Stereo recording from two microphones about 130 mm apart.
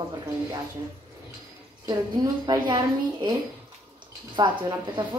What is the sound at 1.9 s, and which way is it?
A woman's voice, 25° right (ahead or behind).